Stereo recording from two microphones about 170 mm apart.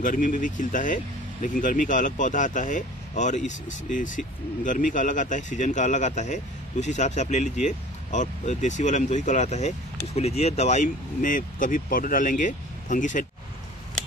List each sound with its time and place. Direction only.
0.0 s speech: 50° left (ahead or behind)